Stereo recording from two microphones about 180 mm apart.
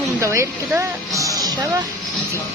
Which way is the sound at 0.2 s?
15° right (ahead or behind).